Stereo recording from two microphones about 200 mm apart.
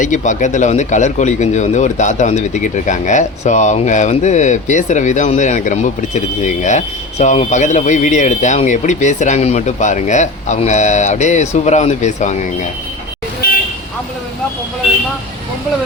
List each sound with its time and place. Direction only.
0.0 s speech: 40° left (ahead or behind)